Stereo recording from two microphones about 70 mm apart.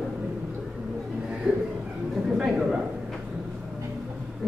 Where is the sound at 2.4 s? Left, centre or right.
Centre.